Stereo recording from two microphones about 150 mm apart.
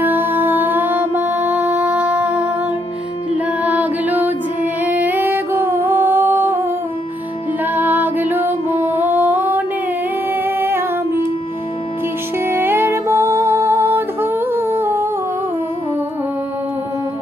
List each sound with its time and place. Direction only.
0.0 s music: 10° right (ahead or behind)
4.8 s singing: 10° right (ahead or behind)
7.6 s music: 10° right (ahead or behind)
10.3 s humming: 15° right (ahead or behind)
12.4 s music: 15° right (ahead or behind)